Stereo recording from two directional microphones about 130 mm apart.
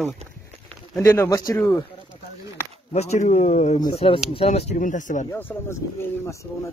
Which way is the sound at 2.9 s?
60° left (ahead or behind).